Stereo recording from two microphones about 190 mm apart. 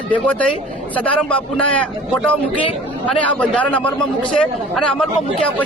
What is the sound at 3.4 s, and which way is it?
Speech, 5° left (ahead or behind).